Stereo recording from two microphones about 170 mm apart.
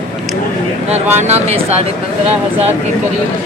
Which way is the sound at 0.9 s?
40° right (ahead or behind).